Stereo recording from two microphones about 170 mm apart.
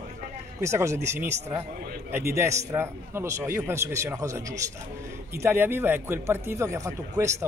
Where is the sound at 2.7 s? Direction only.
15° right (ahead or behind).